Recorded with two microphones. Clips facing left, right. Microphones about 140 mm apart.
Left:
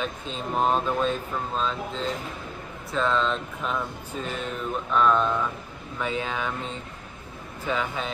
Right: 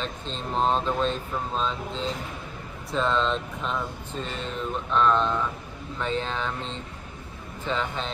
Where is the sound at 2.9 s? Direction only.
Centre (ahead or behind).